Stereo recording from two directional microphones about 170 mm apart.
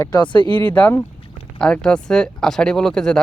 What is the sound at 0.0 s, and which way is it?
Speech, 25° left (ahead or behind).